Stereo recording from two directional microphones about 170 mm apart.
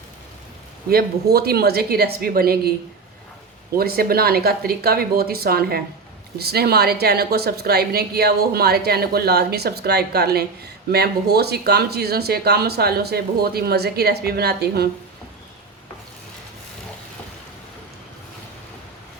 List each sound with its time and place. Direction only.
0.9 s a woman's voice: 65° right (ahead or behind)
3.8 s a woman's voice: 65° right (ahead or behind)